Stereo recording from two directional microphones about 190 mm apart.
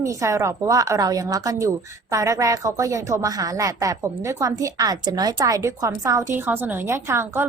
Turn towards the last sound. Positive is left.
turn(degrees=-15)  # may be behind; listen again after turning